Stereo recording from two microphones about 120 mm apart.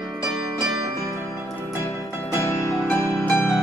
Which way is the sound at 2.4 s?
20° left (ahead or behind).